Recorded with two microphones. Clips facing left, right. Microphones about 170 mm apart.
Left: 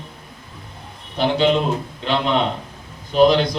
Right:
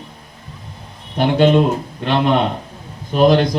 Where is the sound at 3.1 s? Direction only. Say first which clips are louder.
Right 1 dB; 50° right (ahead or behind).